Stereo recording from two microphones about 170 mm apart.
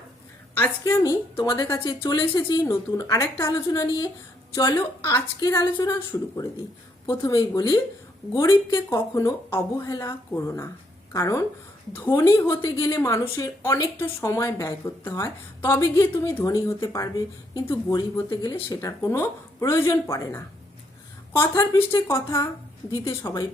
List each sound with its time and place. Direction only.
0.5 s a woman's voice: 15° left (ahead or behind)